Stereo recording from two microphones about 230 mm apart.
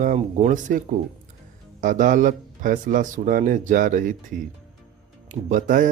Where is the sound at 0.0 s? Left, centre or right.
Right.